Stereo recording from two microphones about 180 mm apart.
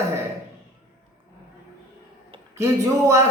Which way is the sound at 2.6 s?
15° right (ahead or behind).